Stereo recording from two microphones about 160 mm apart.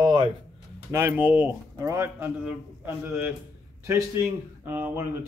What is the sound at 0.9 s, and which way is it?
Speech, 10° right (ahead or behind).